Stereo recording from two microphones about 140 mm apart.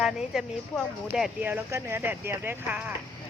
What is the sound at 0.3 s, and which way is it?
Speech, 5° right (ahead or behind).